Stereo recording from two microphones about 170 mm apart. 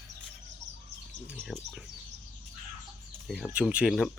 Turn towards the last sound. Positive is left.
turn(degrees=-5)  # may be behind; listen again after turning